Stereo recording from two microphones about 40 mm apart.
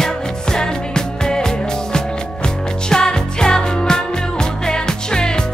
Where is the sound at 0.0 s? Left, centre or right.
Centre.